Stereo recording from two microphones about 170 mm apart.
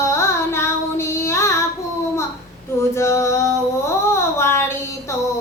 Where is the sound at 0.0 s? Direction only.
15° left (ahead or behind).